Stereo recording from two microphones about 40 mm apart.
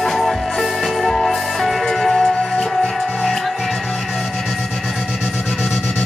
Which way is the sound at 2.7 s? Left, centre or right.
Centre.